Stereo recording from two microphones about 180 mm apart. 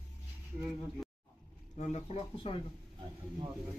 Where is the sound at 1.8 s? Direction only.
35° left (ahead or behind).